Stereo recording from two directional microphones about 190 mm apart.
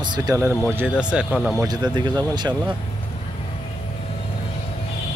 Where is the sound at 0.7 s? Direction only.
5° right (ahead or behind).